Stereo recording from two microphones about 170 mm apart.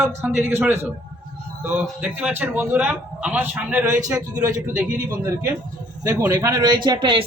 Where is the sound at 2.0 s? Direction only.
5° right (ahead or behind).